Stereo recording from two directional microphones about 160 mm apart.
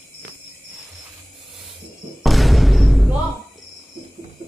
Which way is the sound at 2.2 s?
Centre (ahead or behind).